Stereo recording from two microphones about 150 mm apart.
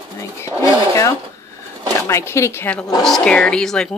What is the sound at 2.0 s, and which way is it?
Speech, 15° left (ahead or behind).